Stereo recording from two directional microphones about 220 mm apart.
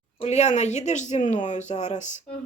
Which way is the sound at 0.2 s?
30° left (ahead or behind).